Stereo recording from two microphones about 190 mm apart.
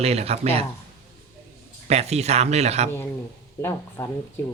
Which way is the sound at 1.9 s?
35° right (ahead or behind).